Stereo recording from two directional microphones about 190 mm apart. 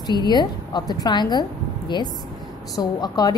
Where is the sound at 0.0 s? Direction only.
20° left (ahead or behind).